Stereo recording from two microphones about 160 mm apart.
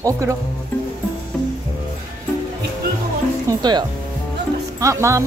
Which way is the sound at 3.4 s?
25° right (ahead or behind).